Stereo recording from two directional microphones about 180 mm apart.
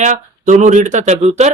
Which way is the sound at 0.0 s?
40° right (ahead or behind).